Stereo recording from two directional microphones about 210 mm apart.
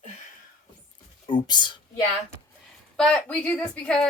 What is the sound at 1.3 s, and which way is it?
Speech, 20° left (ahead or behind).